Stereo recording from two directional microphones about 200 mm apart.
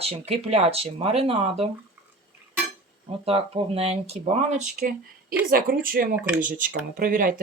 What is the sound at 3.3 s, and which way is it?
Speech, 30° right (ahead or behind).